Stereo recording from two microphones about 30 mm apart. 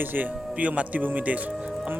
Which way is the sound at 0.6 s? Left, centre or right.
Right.